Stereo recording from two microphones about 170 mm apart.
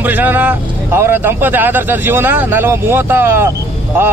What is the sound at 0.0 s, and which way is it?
A man's voice, 10° right (ahead or behind).